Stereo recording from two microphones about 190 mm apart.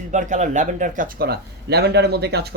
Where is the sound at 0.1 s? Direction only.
40° right (ahead or behind).